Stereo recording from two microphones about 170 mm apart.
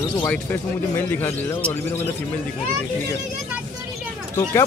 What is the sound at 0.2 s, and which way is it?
Speech, 15° left (ahead or behind).